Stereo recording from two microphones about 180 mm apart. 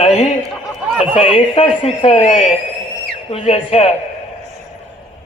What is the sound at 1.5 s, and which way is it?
A man's voice, 35° left (ahead or behind).